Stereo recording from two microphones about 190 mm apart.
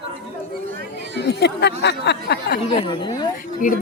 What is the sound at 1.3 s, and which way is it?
Speech, 60° left (ahead or behind).